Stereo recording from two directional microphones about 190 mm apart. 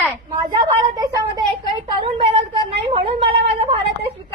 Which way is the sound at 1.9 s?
25° right (ahead or behind).